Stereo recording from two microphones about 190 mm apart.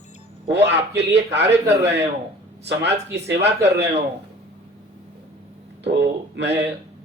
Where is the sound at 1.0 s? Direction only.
65° right (ahead or behind).